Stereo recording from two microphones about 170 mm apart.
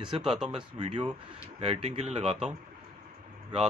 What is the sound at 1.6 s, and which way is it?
Speech, 35° right (ahead or behind).